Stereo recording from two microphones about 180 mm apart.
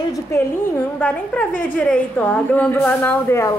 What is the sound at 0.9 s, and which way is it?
A woman's voice, 5° left (ahead or behind).